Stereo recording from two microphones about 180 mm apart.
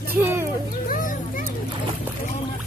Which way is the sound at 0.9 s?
45° left (ahead or behind).